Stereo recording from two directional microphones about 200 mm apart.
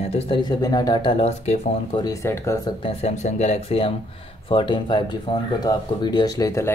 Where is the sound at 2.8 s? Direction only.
35° left (ahead or behind); by 6.7 s 15° left (ahead or behind).